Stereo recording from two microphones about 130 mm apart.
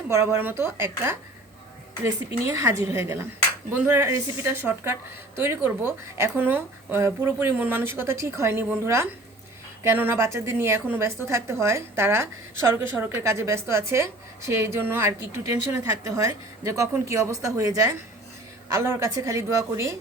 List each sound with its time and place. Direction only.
0.1 s a woman's voice: 20° right (ahead or behind)
2.6 s a woman's voice: 20° right (ahead or behind)